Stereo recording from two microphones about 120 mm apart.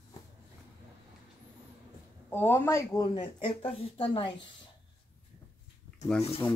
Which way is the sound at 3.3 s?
50° left (ahead or behind).